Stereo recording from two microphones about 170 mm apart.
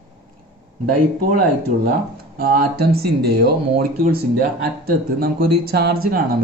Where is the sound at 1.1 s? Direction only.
60° right (ahead or behind).